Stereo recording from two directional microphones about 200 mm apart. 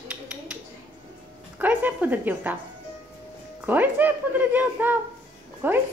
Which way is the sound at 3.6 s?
10° right (ahead or behind).